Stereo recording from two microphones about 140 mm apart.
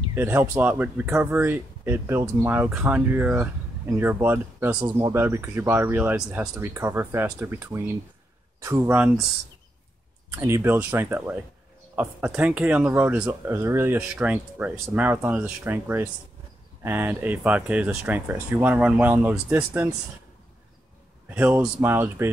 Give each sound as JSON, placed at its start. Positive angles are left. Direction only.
{"t": 0.1, "sound": "speech", "side_deg": -15}
{"t": 10.4, "sound": "speech", "side_deg": -20}
{"t": 13.9, "sound": "speech", "side_deg": -10}
{"t": 21.3, "sound": "speech", "side_deg": -10}